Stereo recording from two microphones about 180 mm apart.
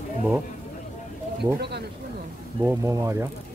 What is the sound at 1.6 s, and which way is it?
Speech, 65° right (ahead or behind).